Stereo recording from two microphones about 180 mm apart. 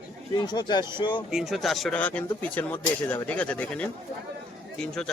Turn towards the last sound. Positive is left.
turn(degrees=5)  # may be behind; listen again after turning